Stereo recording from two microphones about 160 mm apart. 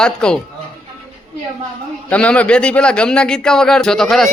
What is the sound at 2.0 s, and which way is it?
Speech, 10° left (ahead or behind).